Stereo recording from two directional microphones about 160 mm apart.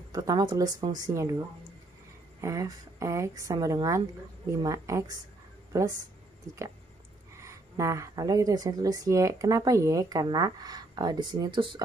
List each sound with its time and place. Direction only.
0.1 s speech: 25° right (ahead or behind)
2.4 s speech: 20° right (ahead or behind)
7.4 s speech: 20° right (ahead or behind)